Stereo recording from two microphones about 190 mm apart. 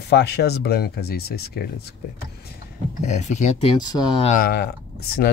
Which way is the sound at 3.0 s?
40° left (ahead or behind).